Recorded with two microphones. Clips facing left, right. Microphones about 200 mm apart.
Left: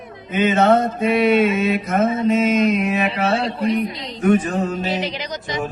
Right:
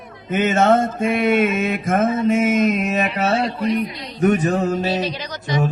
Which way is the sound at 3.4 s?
25° left (ahead or behind).